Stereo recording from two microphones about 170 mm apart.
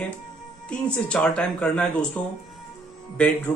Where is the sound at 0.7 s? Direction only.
5° left (ahead or behind).